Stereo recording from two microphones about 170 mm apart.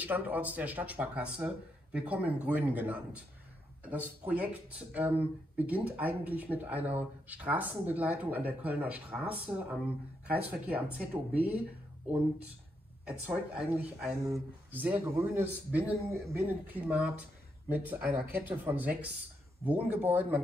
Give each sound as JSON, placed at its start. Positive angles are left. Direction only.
{"t": 0.0, "sound": "speech", "side_deg": -10}
{"t": 13.7, "sound": "speech", "side_deg": -10}